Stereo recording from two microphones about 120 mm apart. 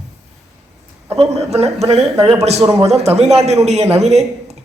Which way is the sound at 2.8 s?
65° right (ahead or behind).